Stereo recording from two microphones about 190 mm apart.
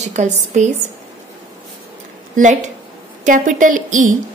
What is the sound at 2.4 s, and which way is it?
A woman's voice, 40° right (ahead or behind).